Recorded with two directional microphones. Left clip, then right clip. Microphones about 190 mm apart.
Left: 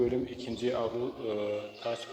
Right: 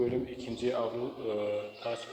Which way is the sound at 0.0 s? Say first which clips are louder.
Left 1 dB; 15° left (ahead or behind).